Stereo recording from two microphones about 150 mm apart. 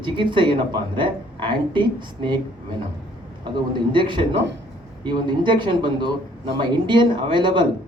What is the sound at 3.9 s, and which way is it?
Speech, 35° right (ahead or behind).